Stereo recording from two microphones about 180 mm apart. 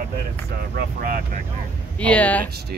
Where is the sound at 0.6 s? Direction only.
55° right (ahead or behind).